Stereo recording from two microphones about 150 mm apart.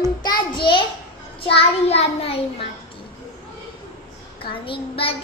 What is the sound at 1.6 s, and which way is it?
Child singing, 40° left (ahead or behind).